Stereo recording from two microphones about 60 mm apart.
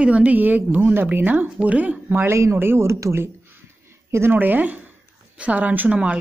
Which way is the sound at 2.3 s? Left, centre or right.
Right.